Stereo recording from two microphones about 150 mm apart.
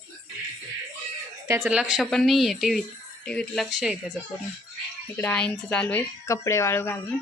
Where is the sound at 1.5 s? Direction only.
20° right (ahead or behind).